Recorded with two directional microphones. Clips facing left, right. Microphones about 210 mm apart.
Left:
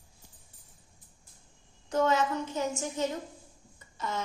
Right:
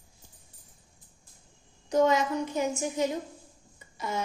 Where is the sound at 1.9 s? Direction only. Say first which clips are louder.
Right 3 dB; 15° right (ahead or behind).